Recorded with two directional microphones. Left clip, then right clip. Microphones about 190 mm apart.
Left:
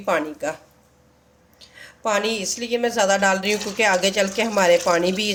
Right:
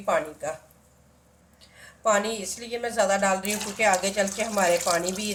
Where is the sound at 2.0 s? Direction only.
40° left (ahead or behind).